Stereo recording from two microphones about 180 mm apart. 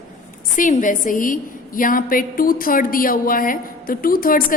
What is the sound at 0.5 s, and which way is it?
A woman's voice, 45° left (ahead or behind).